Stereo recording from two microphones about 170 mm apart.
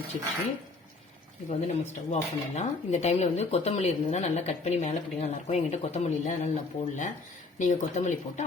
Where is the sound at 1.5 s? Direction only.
40° left (ahead or behind).